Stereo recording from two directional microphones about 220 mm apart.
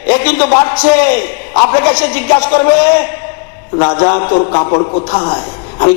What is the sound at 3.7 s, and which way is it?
A man's voice, 25° left (ahead or behind).